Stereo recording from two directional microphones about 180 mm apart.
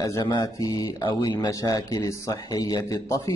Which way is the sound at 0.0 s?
20° left (ahead or behind).